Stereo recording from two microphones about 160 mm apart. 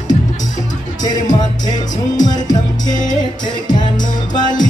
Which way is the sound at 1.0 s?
25° left (ahead or behind).